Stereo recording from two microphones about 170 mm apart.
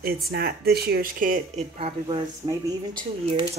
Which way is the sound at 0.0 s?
65° right (ahead or behind).